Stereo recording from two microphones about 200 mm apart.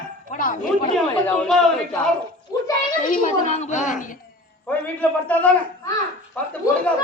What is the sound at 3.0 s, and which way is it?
Speech, 40° left (ahead or behind).